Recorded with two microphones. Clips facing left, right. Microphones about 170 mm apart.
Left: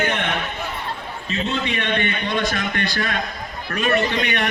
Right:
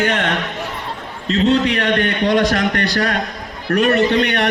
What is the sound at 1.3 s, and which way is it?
A man's voice, 80° right.